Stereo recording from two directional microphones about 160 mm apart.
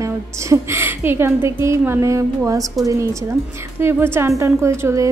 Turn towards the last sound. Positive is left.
turn(degrees=-15)  # may be behind; listen again after turning